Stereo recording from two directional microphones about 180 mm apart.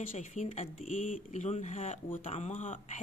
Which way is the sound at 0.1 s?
45° left (ahead or behind).